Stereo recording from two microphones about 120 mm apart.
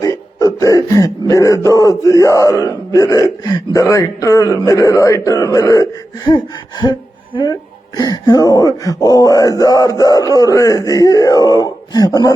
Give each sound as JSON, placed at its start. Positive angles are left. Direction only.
{"t": 0.0, "sound": "speech", "side_deg": 30}